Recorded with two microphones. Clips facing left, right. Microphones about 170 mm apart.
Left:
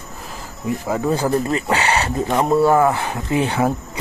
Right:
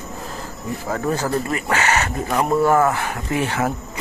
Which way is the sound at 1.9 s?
30° left (ahead or behind).